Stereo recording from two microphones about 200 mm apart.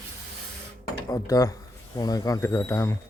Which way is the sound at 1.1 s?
20° left (ahead or behind).